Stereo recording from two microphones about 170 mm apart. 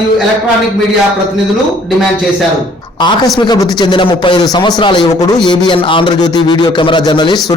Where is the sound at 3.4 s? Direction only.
25° left (ahead or behind).